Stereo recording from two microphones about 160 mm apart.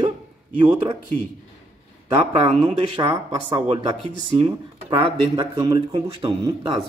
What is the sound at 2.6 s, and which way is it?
Speech, 40° right (ahead or behind).